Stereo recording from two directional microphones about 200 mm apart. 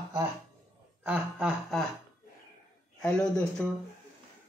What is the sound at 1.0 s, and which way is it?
Speech, 5° right (ahead or behind).